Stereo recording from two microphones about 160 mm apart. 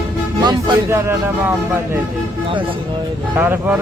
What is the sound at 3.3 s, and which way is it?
Speech, 10° right (ahead or behind).